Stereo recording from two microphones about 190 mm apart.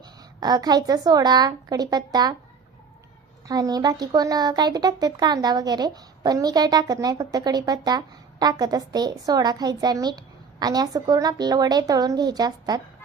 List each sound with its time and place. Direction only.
0.3 s speech: 20° right (ahead or behind)
3.4 s speech: 20° right (ahead or behind)